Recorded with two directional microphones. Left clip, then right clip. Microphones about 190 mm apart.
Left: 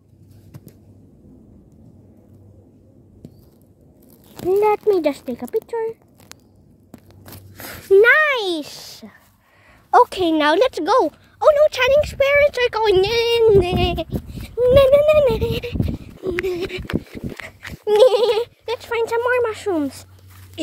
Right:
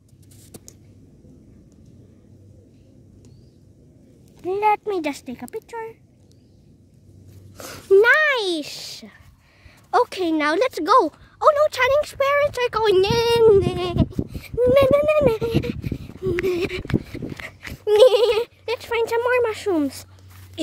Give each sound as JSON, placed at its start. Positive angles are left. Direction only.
{"t": 4.5, "sound": "speech", "side_deg": -15}
{"t": 7.5, "sound": "a sound", "side_deg": -5}
{"t": 9.8, "sound": "a woman's voice", "side_deg": 10}
{"t": 10.7, "sound": "a woman's voice", "side_deg": 0}
{"t": 16.9, "sound": "speech", "side_deg": 60}
{"t": 17.7, "sound": "speech", "side_deg": -5}